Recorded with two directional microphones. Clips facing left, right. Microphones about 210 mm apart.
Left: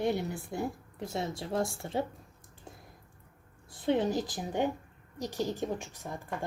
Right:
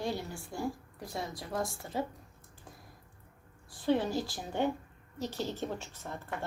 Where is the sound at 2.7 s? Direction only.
25° left (ahead or behind).